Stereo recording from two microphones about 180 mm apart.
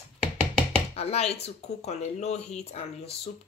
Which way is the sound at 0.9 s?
35° left (ahead or behind).